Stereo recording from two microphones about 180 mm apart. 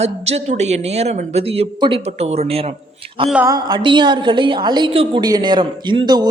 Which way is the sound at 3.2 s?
5° right (ahead or behind).